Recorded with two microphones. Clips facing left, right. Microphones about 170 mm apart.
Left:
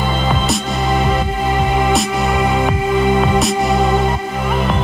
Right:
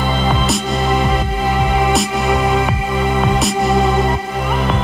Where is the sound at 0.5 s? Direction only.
Centre (ahead or behind).